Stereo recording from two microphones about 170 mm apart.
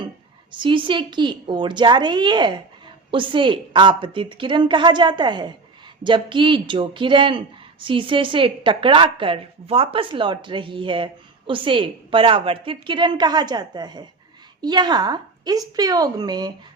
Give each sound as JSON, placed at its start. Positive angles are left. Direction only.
{"t": 0.5, "sound": "speech", "side_deg": -30}